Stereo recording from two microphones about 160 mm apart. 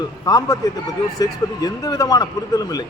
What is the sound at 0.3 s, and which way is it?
A man's voice, 25° left (ahead or behind).